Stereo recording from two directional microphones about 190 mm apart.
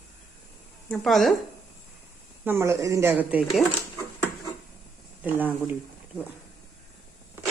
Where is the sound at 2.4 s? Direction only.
15° right (ahead or behind).